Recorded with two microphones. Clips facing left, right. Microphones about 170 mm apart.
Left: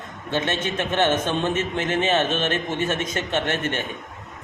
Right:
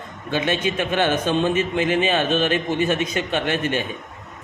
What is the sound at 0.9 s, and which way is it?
Speech, 25° left (ahead or behind).